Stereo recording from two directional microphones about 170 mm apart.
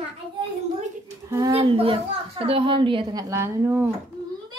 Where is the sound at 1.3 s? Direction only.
20° right (ahead or behind).